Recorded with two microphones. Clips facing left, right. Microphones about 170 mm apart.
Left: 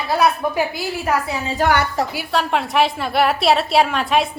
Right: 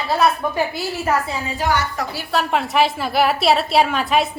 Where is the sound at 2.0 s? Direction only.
30° left (ahead or behind).